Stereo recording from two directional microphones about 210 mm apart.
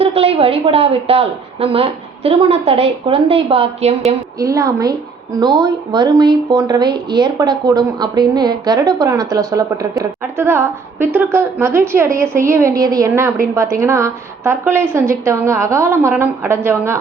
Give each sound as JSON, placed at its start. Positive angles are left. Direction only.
{"t": 0.0, "sound": "a woman's voice", "side_deg": -30}
{"t": 4.4, "sound": "speech", "side_deg": -15}